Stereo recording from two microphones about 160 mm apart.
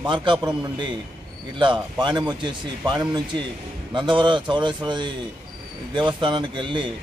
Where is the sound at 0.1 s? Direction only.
30° right (ahead or behind).